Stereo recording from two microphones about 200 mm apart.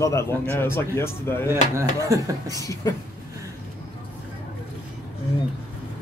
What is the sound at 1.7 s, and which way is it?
Speech, 15° right (ahead or behind).